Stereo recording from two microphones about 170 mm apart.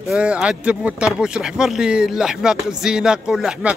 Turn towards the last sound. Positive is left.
turn(degrees=-5)  # may be behind; listen again after turning